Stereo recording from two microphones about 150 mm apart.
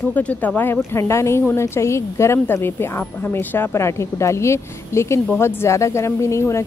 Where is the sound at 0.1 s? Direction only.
10° left (ahead or behind).